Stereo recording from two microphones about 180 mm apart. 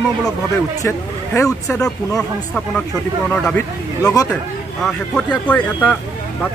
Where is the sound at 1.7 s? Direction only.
5° left (ahead or behind).